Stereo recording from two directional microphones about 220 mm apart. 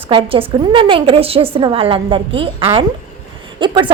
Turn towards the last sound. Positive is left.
turn(degrees=-20)  # may be behind; listen again after turning